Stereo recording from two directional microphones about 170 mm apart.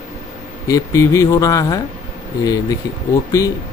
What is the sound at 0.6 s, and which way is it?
Speech, 20° left (ahead or behind).